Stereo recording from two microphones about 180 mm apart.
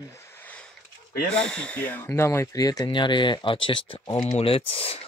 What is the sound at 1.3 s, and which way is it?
Speech, 5° left (ahead or behind).